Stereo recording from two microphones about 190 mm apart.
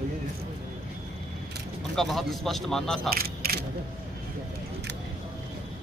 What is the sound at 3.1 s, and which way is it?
Single-lens reflex camera, 50° right (ahead or behind).